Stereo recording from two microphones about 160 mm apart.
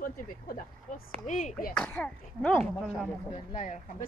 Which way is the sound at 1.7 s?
5° left (ahead or behind).